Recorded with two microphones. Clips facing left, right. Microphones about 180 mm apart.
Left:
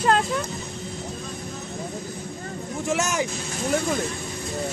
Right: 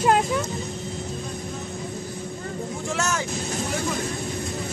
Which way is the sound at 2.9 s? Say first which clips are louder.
Left 3 dB; 15° left (ahead or behind).